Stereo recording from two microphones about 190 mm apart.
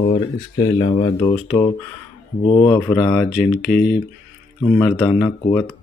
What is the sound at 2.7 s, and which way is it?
Speech, 10° left (ahead or behind).